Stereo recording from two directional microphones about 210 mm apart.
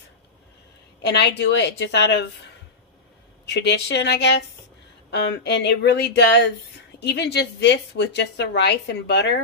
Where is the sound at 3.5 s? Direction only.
55° left (ahead or behind).